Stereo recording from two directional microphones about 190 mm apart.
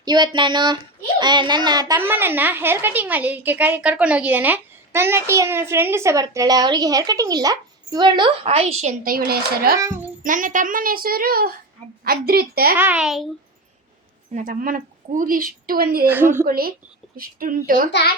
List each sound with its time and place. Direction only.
0.0 s a child's voice: 20° right (ahead or behind)
9.0 s a woman's voice: 50° right (ahead or behind)
9.7 s a child's voice: 15° right (ahead or behind)
10.2 s a woman's voice: 45° right (ahead or behind)
12.7 s a child's voice: 10° right (ahead or behind)
14.3 s a woman's voice: 45° right (ahead or behind)
16.0 s a child's voice: 10° right (ahead or behind)
16.4 s a woman's voice: 50° right (ahead or behind)